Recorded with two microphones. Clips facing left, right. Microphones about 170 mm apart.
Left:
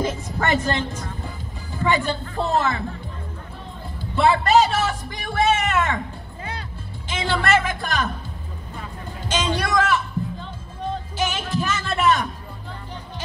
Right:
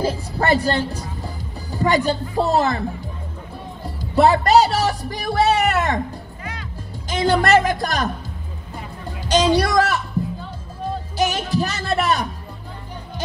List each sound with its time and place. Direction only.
0.0 s a woman's voice: 35° right (ahead or behind)
3.8 s speech: 40° right (ahead or behind)
7.1 s speech: 40° right (ahead or behind)
9.6 s speech: 40° right (ahead or behind)
11.1 s speech: 40° right (ahead or behind)